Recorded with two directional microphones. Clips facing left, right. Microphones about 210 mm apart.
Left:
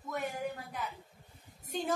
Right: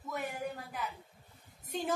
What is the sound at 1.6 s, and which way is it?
Speech, centre (ahead or behind).